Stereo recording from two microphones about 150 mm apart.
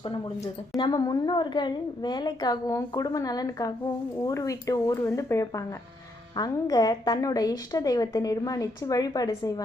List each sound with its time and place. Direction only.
0.8 s a woman's voice: 30° left (ahead or behind)